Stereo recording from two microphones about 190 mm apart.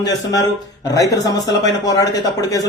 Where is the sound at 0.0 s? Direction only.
20° left (ahead or behind).